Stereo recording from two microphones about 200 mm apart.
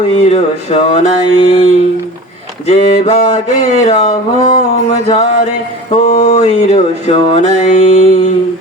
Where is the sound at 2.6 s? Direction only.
35° left (ahead or behind).